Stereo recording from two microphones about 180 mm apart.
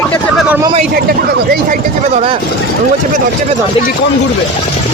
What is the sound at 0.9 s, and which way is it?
Speech, 60° right (ahead or behind).